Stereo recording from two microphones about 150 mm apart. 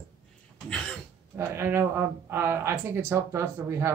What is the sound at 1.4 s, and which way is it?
Speech, 15° right (ahead or behind).